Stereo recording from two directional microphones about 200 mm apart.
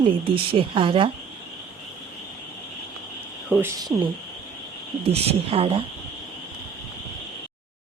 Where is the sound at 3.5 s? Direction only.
10° right (ahead or behind).